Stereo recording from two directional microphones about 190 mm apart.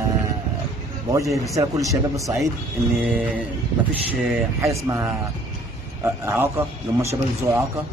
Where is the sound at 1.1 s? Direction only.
15° right (ahead or behind).